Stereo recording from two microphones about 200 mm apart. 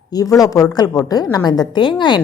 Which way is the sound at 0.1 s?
20° left (ahead or behind).